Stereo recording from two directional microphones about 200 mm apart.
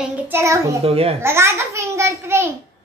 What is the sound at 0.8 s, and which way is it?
Speech, 30° right (ahead or behind).